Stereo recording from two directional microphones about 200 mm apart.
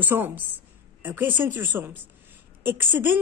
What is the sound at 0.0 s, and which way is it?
A woman's voice, 10° right (ahead or behind).